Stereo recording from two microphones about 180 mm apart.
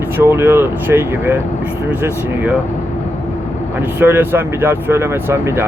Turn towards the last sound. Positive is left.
turn(degrees=-15)  # may be behind; listen again after turning